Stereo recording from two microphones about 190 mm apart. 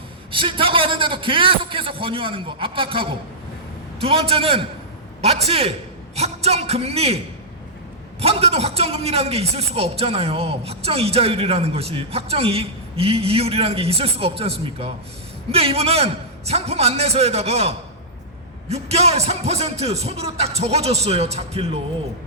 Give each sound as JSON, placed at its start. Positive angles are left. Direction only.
{"t": 0.3, "sound": "a man's voice", "side_deg": -25}
{"t": 8.2, "sound": "a man's voice", "side_deg": -30}